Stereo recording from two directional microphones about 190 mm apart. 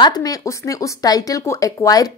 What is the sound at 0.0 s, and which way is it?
Speech, 20° left (ahead or behind).